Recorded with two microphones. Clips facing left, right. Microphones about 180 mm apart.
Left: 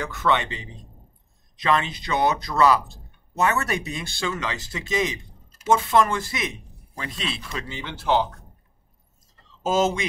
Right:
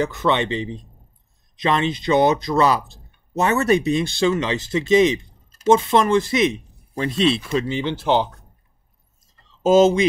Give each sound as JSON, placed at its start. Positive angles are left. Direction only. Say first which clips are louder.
{"t": 0.0, "sound": "speech", "louder": "right 4 dB", "side_deg": -20}
{"t": 9.6, "sound": "speech", "louder": "right 8 dB", "side_deg": -20}